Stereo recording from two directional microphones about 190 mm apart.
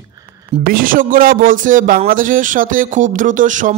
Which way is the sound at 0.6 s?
45° right (ahead or behind).